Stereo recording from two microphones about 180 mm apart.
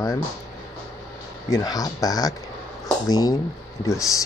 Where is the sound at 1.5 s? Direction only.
20° left (ahead or behind).